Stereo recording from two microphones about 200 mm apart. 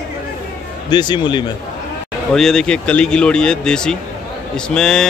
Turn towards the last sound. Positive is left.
turn(degrees=5)  # may be behind; listen again after turning